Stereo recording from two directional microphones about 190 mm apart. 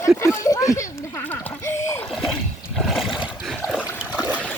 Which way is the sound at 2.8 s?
Centre (ahead or behind).